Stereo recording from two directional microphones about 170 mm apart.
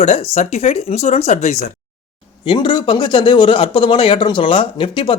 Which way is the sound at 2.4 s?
30° left (ahead or behind).